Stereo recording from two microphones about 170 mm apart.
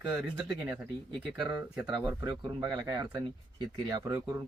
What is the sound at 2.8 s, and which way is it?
Speech, 20° right (ahead or behind).